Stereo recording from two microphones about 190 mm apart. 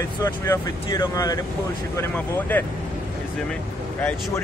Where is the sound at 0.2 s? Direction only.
15° left (ahead or behind).